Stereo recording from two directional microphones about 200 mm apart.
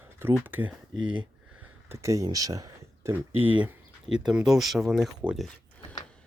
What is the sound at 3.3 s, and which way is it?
Speech, 25° right (ahead or behind).